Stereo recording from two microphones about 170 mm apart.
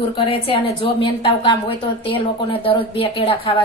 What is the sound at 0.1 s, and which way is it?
A woman's voice, 35° left (ahead or behind).